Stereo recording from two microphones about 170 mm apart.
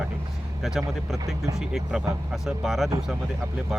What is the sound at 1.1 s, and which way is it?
Speech, 20° right (ahead or behind).